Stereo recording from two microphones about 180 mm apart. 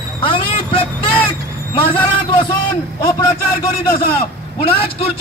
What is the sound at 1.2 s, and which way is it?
Vehicle, 30° left (ahead or behind).